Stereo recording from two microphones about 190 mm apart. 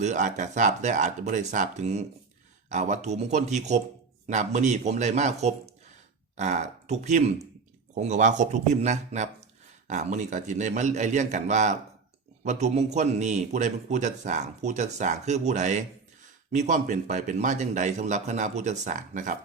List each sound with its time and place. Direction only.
0.0 s a man's voice: 40° right (ahead or behind)